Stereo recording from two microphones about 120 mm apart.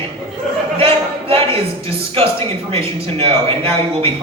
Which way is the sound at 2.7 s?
55° right (ahead or behind).